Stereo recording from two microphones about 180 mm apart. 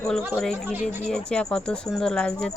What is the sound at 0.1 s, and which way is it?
Speech, 5° left (ahead or behind).